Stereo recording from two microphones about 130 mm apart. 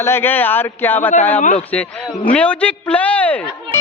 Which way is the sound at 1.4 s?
70° left (ahead or behind).